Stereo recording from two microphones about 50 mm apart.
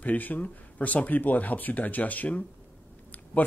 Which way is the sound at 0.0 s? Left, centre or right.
Left.